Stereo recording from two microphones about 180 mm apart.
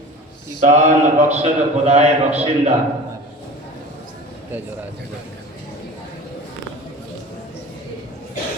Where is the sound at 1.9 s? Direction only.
35° right (ahead or behind).